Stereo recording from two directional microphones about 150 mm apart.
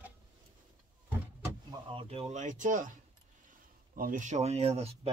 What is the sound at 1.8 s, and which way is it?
Speech, 35° right (ahead or behind).